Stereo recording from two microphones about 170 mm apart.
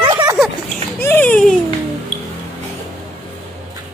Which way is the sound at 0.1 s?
25° right (ahead or behind).